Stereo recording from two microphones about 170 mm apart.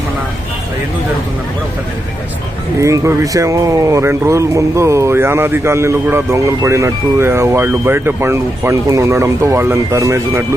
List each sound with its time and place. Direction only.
2.8 s speech: 15° right (ahead or behind)